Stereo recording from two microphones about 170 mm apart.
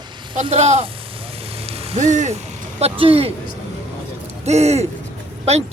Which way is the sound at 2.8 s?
35° right (ahead or behind).